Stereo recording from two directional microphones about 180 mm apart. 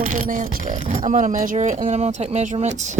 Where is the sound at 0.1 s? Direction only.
45° right (ahead or behind).